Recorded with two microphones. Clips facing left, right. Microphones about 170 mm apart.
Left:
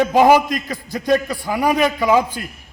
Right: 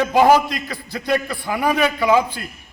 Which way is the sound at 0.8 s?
45° left (ahead or behind).